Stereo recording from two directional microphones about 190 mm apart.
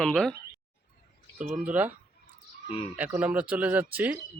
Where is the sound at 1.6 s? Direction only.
10° right (ahead or behind).